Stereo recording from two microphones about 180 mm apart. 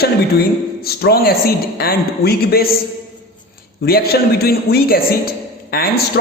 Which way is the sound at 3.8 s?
60° left (ahead or behind).